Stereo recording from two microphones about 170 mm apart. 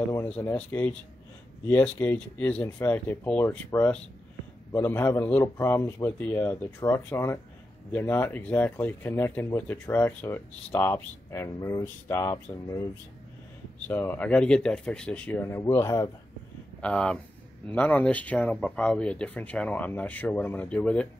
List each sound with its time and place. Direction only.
0.1 s speech: 10° left (ahead or behind)
13.8 s speech: 10° left (ahead or behind)
16.8 s speech: 5° left (ahead or behind)